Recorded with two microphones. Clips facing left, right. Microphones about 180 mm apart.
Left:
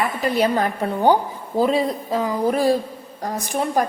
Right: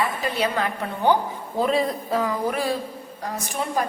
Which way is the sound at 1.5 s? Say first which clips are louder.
Left 3 dB; 30° left (ahead or behind).